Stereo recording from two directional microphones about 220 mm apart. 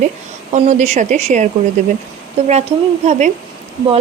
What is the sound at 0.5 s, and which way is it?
Speech, 30° right (ahead or behind).